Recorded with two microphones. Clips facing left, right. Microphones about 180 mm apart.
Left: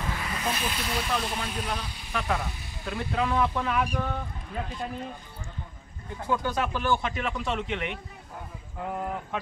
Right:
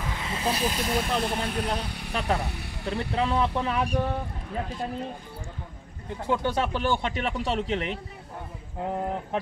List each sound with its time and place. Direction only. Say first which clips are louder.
0.1 s speech: right 4 dB; 25° right (ahead or behind); by 3.1 s 65° right (ahead or behind)
3.2 s speech: even; 30° right (ahead or behind)
6.2 s speech: right 2 dB; 25° right (ahead or behind)